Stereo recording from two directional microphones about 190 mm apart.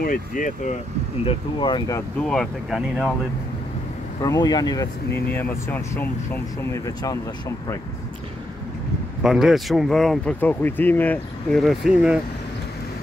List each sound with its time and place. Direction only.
0.0 s speech: 45° left (ahead or behind)
1.2 s speech: 25° left (ahead or behind)
2.2 s speech: centre (ahead or behind)
4.2 s speech: 20° left (ahead or behind)
9.2 s speech: centre (ahead or behind)